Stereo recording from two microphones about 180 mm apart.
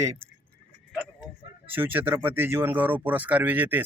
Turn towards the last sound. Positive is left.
turn(degrees=-10)  # may be behind; listen again after turning